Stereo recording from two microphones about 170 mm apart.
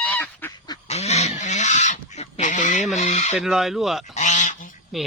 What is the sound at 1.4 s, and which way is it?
Pig, 45° left (ahead or behind).